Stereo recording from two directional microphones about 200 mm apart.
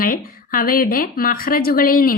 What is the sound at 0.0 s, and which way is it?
Speech, 45° left (ahead or behind).